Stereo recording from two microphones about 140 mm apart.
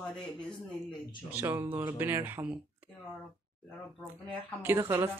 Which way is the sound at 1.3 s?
15° right (ahead or behind).